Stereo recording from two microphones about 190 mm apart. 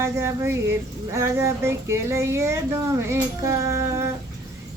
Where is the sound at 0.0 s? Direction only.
15° right (ahead or behind).